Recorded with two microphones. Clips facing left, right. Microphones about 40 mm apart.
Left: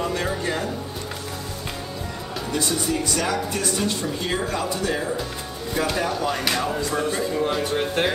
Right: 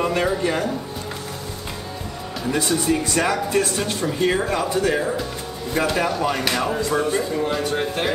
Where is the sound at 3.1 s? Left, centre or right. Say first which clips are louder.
Right 5 dB; right.